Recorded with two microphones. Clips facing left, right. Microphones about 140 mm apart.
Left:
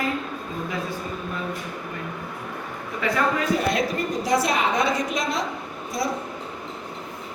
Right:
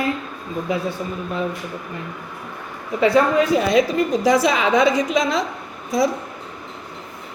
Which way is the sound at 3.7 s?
90° right.